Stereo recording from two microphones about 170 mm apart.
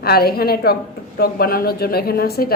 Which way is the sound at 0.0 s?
65° left (ahead or behind).